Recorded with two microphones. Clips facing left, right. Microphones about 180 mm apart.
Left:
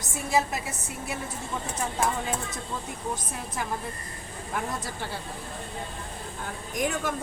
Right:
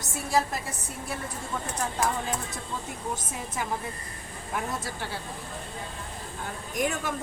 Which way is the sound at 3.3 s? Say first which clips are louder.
Even; 5° right (ahead or behind).